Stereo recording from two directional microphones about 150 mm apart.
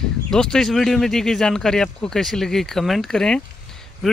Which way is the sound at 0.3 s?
5° left (ahead or behind).